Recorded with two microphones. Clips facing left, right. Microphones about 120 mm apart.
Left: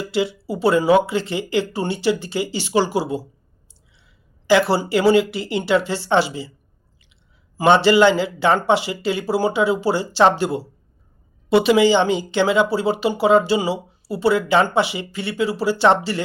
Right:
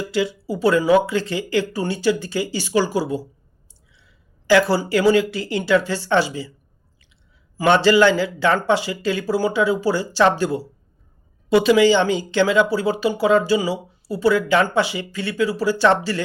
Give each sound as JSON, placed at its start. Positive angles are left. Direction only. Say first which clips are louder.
{"t": 0.0, "sound": "speech", "louder": "even", "side_deg": 20}
{"t": 4.7, "sound": "speech", "louder": "left 1 dB", "side_deg": 20}
{"t": 7.9, "sound": "speech", "louder": "left 1 dB", "side_deg": 20}